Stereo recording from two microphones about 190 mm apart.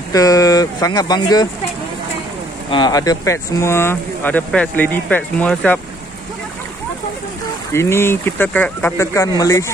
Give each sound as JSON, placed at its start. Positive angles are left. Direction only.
{"t": 0.1, "sound": "speech", "side_deg": 20}
{"t": 2.7, "sound": "speech", "side_deg": 20}
{"t": 7.7, "sound": "speech", "side_deg": 15}